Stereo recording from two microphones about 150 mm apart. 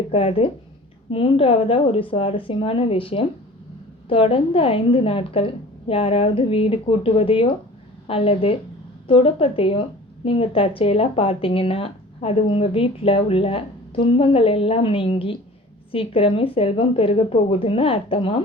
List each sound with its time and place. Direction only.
0.1 s speech: 40° left (ahead or behind)